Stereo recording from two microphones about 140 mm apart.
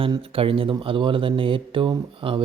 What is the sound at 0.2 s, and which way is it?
Speech, 40° right (ahead or behind).